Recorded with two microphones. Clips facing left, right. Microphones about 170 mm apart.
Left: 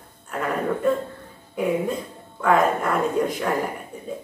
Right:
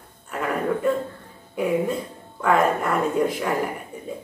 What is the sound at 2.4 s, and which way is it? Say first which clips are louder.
A woman's voice: even; 5° right (ahead or behind).